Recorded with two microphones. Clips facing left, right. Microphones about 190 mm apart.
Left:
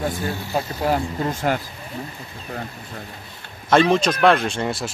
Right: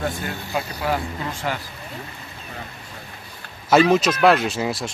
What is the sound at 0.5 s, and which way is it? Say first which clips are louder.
Speech: left 2 dB; 40° left (ahead or behind).